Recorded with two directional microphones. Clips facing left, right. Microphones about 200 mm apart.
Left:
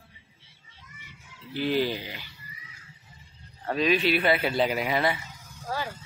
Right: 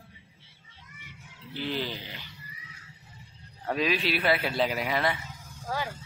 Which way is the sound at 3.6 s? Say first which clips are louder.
Left 4 dB; 5° right (ahead or behind).